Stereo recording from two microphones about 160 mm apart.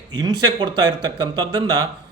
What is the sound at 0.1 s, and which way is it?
A man's voice, 25° right (ahead or behind).